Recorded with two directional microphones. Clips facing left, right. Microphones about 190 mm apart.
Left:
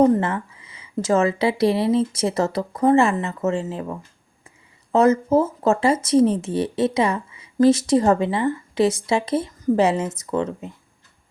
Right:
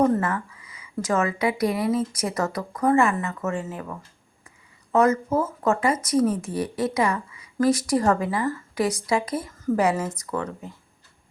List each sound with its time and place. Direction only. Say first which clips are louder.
0.0 s speech: left 4 dB; 25° left (ahead or behind)